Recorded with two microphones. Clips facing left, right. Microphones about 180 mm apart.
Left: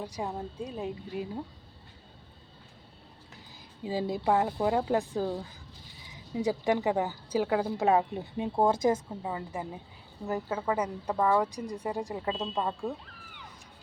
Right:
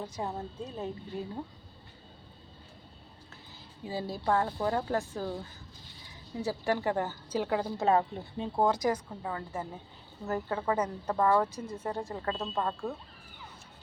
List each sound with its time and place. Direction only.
0.0 s speech: 10° left (ahead or behind)
3.8 s speech: 15° left (ahead or behind)